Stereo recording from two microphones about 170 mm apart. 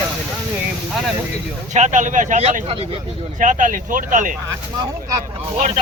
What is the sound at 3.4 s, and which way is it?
Speech, 50° right (ahead or behind).